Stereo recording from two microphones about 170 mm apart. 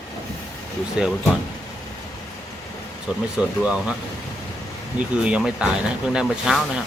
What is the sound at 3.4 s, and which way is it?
Speech, 5° right (ahead or behind).